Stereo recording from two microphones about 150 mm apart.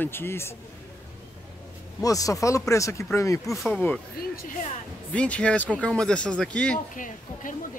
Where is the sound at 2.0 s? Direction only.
25° left (ahead or behind).